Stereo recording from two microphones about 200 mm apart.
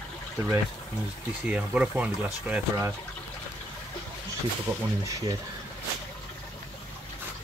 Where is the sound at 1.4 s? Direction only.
5° right (ahead or behind).